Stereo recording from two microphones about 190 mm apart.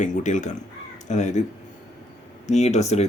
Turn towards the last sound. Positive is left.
turn(degrees=35)  # may be behind; listen again after turning